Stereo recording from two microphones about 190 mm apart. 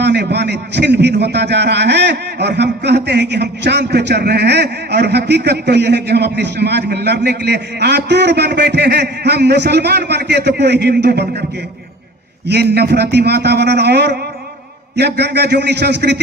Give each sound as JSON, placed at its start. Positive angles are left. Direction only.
{"t": 0.0, "sound": "a man's voice", "side_deg": -60}
{"t": 12.5, "sound": "a man's voice", "side_deg": -60}